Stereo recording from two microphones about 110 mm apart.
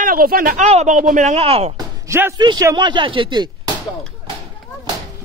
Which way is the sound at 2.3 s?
40° right (ahead or behind).